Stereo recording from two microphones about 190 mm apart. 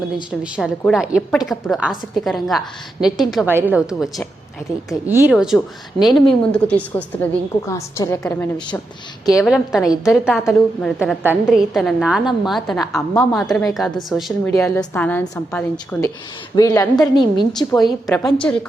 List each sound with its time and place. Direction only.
0.4 s a woman's voice: 5° right (ahead or behind); by 8.4 s 15° left (ahead or behind)
9.4 s a woman's voice: centre (ahead or behind)
14.4 s a woman's voice: 15° left (ahead or behind)
18.0 s a woman's voice: centre (ahead or behind)